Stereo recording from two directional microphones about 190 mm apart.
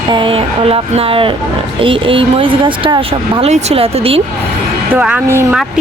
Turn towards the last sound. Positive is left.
turn(degrees=-10)  # may be behind; listen again after turning